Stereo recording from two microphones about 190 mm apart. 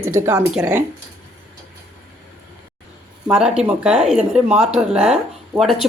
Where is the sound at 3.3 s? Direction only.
5° right (ahead or behind).